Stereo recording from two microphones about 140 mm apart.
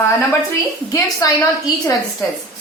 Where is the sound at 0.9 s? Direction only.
25° left (ahead or behind).